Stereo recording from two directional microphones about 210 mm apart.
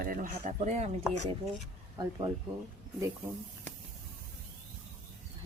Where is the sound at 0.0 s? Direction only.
40° right (ahead or behind).